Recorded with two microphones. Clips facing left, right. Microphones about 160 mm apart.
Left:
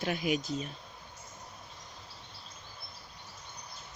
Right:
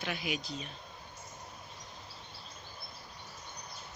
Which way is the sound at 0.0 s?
45° left (ahead or behind).